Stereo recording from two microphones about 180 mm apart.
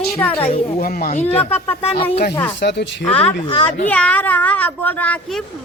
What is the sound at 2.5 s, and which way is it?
Speech, 75° left (ahead or behind).